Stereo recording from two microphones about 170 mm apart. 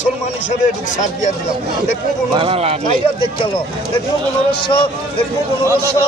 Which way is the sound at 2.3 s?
35° right (ahead or behind).